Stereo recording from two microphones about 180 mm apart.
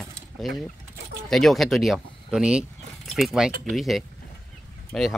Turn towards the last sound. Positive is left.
turn(degrees=0)  # may be behind; listen again after turning